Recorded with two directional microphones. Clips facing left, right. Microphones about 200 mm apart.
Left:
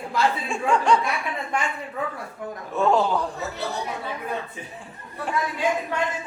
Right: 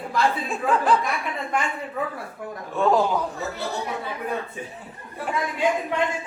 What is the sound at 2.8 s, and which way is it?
Speech, 5° right (ahead or behind).